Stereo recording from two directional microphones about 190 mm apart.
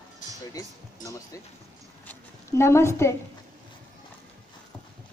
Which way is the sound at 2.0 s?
15° left (ahead or behind).